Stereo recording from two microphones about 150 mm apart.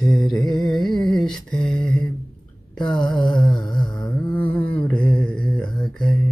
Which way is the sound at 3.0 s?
30° left (ahead or behind).